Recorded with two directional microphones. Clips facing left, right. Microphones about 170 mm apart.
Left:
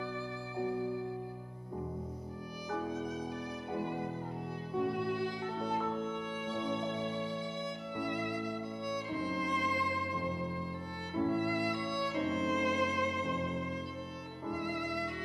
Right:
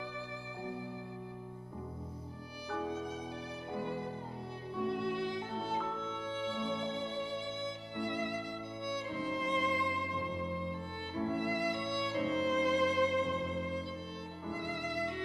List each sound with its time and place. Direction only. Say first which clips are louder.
4.8 s music: right 1 dB; 25° right (ahead or behind)
7.6 s music: left 1 dB; 25° right (ahead or behind)
11.3 s music: left 1 dB; 20° right (ahead or behind)
14.5 s violin: left 2 dB; 25° right (ahead or behind)